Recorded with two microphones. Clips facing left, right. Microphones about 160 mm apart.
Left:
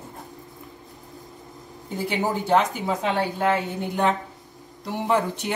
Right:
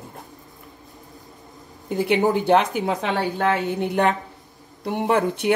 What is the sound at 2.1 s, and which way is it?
Speech, 65° right (ahead or behind).